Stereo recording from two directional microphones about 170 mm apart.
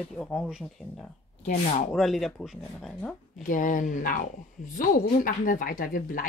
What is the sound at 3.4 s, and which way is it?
A woman's voice, 50° left (ahead or behind).